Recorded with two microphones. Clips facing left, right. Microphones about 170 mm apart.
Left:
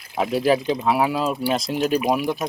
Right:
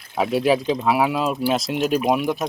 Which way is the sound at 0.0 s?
Centre (ahead or behind).